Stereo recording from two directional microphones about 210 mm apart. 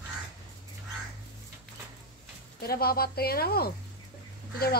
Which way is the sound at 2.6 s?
45° left (ahead or behind).